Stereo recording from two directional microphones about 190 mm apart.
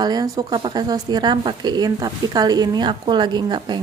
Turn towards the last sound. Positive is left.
turn(degrees=-25)  # may be behind; listen again after turning